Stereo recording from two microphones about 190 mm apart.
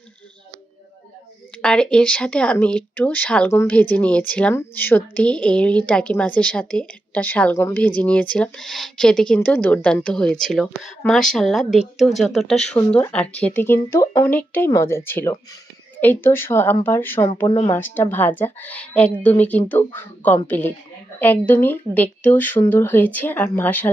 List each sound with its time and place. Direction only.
1.6 s speech: 5° left (ahead or behind)
17.4 s a woman's voice: 25° left (ahead or behind)
17.7 s speech: 10° left (ahead or behind)